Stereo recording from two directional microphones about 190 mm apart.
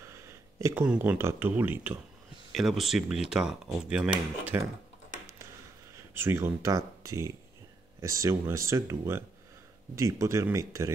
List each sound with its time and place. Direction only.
0.0 s a sound: 15° right (ahead or behind)
1.0 s speech: 10° right (ahead or behind)
5.9 s speech: 15° right (ahead or behind)